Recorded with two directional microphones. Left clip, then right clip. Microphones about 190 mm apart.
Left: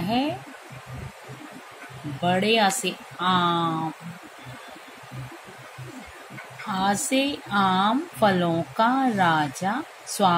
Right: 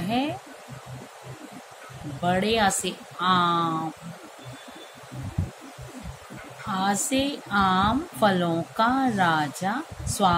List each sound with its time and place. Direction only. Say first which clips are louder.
2.2 s a woman's voice: left 2 dB; 15° left (ahead or behind)
6.7 s a woman's voice: left 1 dB; 15° left (ahead or behind)